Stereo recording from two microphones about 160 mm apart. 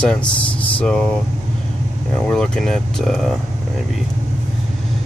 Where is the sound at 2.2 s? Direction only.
5° left (ahead or behind).